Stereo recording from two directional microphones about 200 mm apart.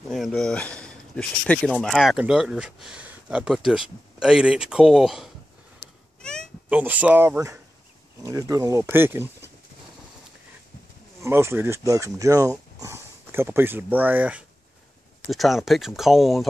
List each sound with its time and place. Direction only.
0.1 s speech: centre (ahead or behind)
6.7 s speech: 10° right (ahead or behind)
11.2 s speech: 15° right (ahead or behind)